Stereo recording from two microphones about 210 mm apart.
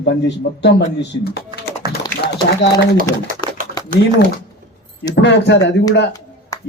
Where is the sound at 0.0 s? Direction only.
55° left (ahead or behind).